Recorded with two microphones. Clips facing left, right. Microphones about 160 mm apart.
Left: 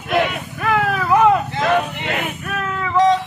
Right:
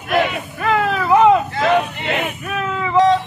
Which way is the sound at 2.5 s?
5° right (ahead or behind).